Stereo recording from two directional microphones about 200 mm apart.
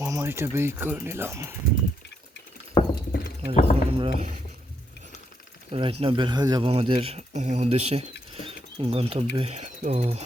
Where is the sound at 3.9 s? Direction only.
25° right (ahead or behind).